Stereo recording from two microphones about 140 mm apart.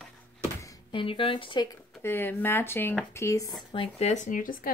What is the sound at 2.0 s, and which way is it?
Speech, 15° left (ahead or behind).